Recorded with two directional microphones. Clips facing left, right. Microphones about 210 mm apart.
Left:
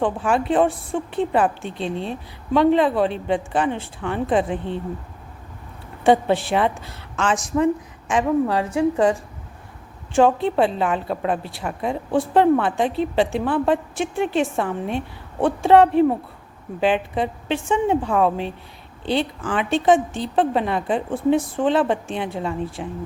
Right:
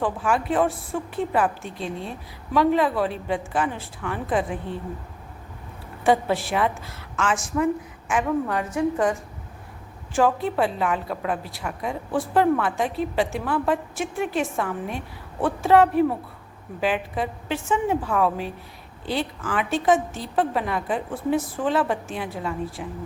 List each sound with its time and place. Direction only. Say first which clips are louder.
0.0 s a woman's voice: left 3 dB; 30° left (ahead or behind)
6.5 s a woman's voice: left 3 dB; 30° left (ahead or behind)
10.2 s a woman's voice: left 4 dB; 25° left (ahead or behind)